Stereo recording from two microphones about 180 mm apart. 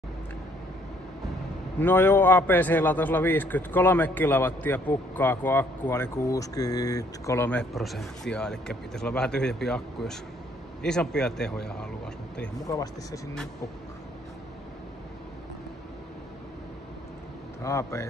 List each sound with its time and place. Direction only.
1.8 s a man's voice: 10° left (ahead or behind)
7.7 s speech: centre (ahead or behind)
12.6 s speech: 20° left (ahead or behind)
17.6 s a man's voice: 15° left (ahead or behind)